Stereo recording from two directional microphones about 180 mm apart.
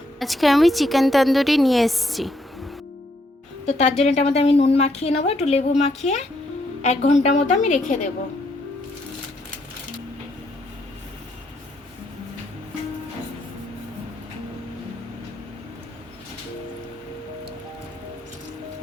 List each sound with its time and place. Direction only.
0.2 s a woman's voice: centre (ahead or behind)
3.7 s a woman's voice: 40° left (ahead or behind)